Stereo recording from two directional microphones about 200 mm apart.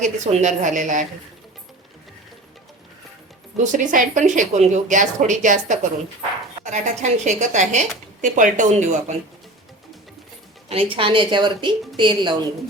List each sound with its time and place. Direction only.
0.0 s a woman's voice: 35° right (ahead or behind)
3.6 s a woman's voice: 40° right (ahead or behind)
10.9 s a woman's voice: 25° right (ahead or behind)